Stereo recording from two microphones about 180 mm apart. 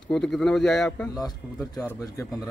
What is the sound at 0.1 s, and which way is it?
A man's voice, 5° left (ahead or behind).